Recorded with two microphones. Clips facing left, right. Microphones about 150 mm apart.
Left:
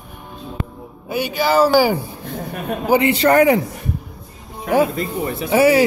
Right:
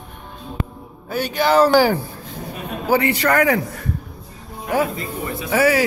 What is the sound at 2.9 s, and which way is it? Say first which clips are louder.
Speech: left 3 dB; 25° left (ahead or behind).